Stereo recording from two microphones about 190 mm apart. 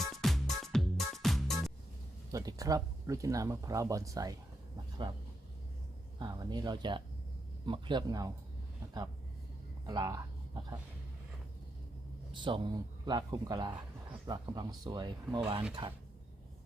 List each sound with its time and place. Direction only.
0.0 s music: centre (ahead or behind)
2.3 s speech: 20° right (ahead or behind)
6.1 s speech: 20° right (ahead or behind)
9.8 s a sound: 20° right (ahead or behind)
12.3 s speech: 25° right (ahead or behind)